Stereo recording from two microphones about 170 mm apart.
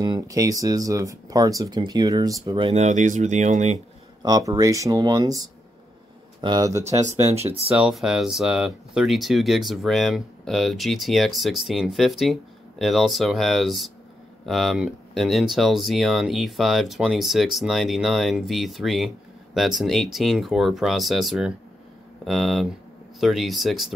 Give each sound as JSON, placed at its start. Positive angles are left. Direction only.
{"t": 0.0, "sound": "speech", "side_deg": -20}
{"t": 4.2, "sound": "speech", "side_deg": -20}
{"t": 7.7, "sound": "speech", "side_deg": -5}